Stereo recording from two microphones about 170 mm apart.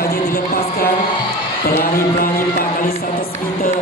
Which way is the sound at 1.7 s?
60° left (ahead or behind).